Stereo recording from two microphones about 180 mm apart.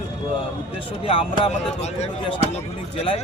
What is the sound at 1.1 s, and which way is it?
Speech, 35° left (ahead or behind).